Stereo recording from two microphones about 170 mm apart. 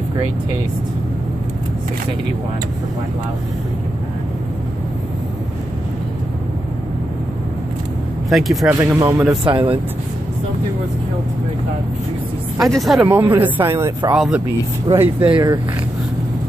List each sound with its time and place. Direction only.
8.3 s speech: centre (ahead or behind)
9.4 s speech: 30° right (ahead or behind)
12.7 s speech: centre (ahead or behind)
13.0 s speech: 10° right (ahead or behind)
14.1 s speech: 5° right (ahead or behind)